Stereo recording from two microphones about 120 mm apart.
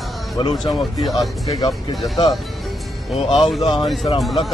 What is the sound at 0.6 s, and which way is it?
Speech, centre (ahead or behind).